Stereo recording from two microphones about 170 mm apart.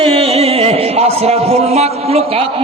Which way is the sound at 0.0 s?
35° right (ahead or behind).